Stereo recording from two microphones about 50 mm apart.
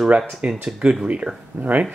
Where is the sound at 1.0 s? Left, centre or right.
Right.